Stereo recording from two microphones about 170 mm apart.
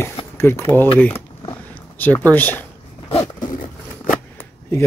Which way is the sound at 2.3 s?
10° left (ahead or behind).